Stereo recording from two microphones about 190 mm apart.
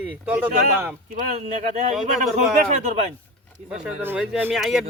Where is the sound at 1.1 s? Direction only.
40° right (ahead or behind).